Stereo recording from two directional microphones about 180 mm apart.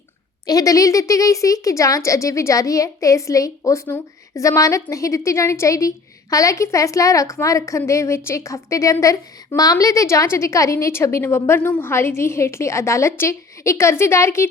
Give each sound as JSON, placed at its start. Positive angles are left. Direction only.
{"t": 0.4, "sound": "a woman's voice", "side_deg": 20}